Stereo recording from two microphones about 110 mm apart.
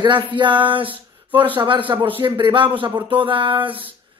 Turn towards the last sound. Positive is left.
turn(degrees=-55)  # may be behind; listen again after turning